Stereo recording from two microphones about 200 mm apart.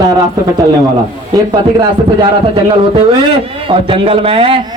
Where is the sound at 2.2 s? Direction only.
25° right (ahead or behind).